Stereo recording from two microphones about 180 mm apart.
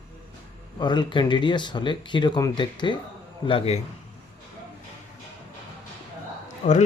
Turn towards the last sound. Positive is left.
turn(degrees=40)  # may be behind; listen again after turning